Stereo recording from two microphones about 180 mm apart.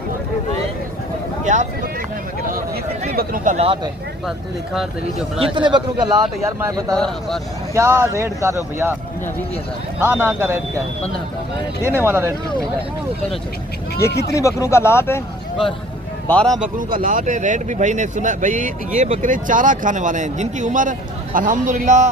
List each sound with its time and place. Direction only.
1.5 s speech: 40° right (ahead or behind)
2.5 s a sound: 50° right (ahead or behind)
5.5 s a man's voice: 25° right (ahead or behind)
6.9 s speech: centre (ahead or behind)
7.7 s speech: 15° right (ahead or behind)
10.0 s speech: 10° right (ahead or behind)
11.9 s speech: 10° right (ahead or behind)
14.1 s speech: 65° left (ahead or behind)
14.3 s speech: 15° left (ahead or behind)
16.2 s a man's voice: 5° left (ahead or behind)
16.7 s speech: 50° right (ahead or behind)